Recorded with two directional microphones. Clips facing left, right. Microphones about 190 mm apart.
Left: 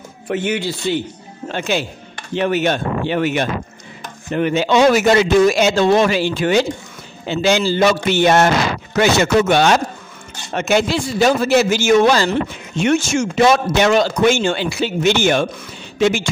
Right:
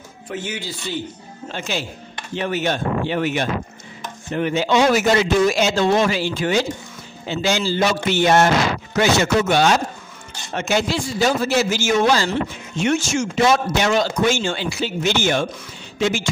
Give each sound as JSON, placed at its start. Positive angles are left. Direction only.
{"t": 0.3, "sound": "a man's voice", "side_deg": 65}